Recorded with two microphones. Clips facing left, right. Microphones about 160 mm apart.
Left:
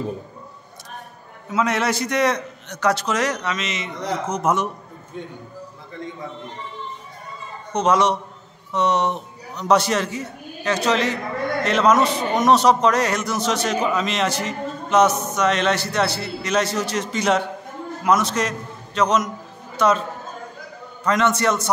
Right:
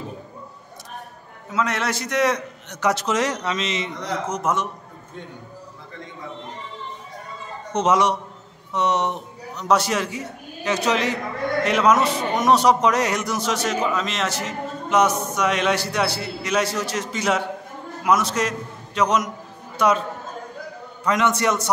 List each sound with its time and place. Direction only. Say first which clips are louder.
1.5 s a man's voice: left 3 dB; centre (ahead or behind)
2.7 s a man's voice: left 1 dB; 20° right (ahead or behind)
4.3 s a man's voice: left 3 dB; centre (ahead or behind)
7.7 s a man's voice: left 1 dB; 20° right (ahead or behind)
9.6 s a man's voice: left 2 dB; 5° right (ahead or behind)
21.0 s a man's voice: left 1 dB; 15° right (ahead or behind)